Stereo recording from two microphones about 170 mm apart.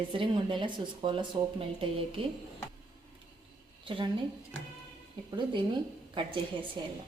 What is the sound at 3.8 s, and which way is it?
Speech, 30° right (ahead or behind).